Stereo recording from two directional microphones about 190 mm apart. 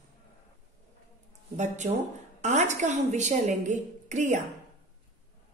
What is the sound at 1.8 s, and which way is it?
A woman's voice, 35° right (ahead or behind).